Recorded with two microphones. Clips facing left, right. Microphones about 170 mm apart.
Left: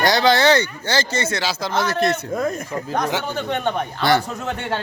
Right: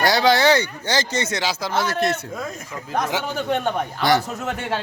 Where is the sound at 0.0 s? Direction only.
10° right (ahead or behind).